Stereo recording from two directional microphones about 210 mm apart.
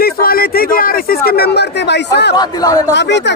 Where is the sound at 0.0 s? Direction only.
45° left (ahead or behind).